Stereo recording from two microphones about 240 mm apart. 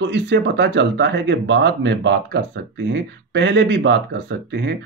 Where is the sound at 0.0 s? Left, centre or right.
Right.